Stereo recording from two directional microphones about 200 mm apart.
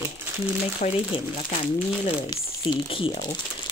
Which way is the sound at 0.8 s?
40° left (ahead or behind).